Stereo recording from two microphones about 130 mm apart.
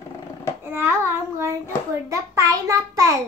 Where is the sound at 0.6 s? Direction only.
20° right (ahead or behind).